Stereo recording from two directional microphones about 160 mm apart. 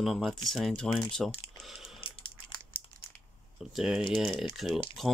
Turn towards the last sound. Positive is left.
turn(degrees=0)  # may be behind; listen again after turning